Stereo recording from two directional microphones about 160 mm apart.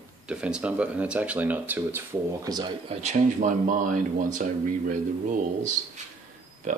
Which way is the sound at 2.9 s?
45° right (ahead or behind).